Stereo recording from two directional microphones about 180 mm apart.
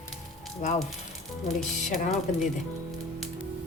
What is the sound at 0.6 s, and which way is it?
Speech, 40° left (ahead or behind).